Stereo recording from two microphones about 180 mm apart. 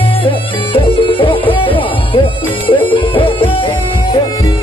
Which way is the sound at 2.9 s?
30° left (ahead or behind).